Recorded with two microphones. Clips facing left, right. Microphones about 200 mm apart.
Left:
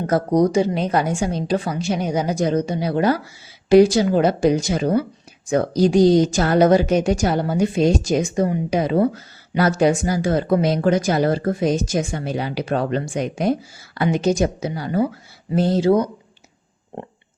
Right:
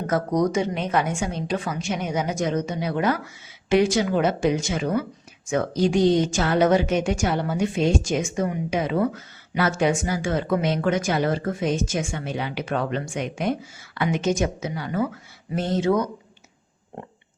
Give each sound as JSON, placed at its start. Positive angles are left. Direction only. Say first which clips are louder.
{"t": 0.1, "sound": "a woman's voice", "louder": "left 5 dB", "side_deg": 30}